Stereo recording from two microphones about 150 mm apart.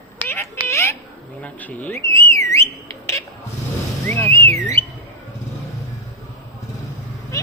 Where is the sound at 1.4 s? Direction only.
10° left (ahead or behind).